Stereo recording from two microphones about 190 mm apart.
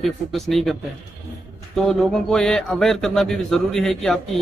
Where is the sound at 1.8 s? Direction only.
Centre (ahead or behind).